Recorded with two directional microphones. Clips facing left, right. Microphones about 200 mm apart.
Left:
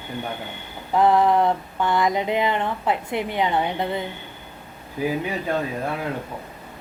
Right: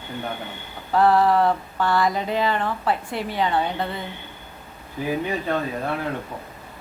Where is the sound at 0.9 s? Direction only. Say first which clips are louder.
Even; 20° left (ahead or behind).